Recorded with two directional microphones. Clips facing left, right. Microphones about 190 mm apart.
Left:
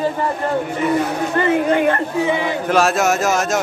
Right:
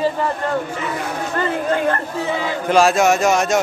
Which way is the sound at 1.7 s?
15° left (ahead or behind).